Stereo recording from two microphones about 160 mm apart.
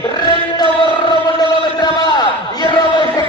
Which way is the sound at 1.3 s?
25° left (ahead or behind).